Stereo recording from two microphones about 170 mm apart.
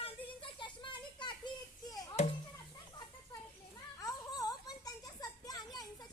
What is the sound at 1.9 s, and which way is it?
Music, 20° left (ahead or behind).